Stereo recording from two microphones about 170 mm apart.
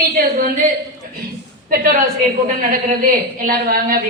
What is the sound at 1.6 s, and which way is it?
A woman's voice, 60° right (ahead or behind).